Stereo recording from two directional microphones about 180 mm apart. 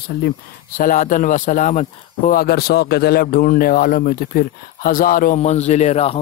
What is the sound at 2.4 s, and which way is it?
Speech, 60° left (ahead or behind).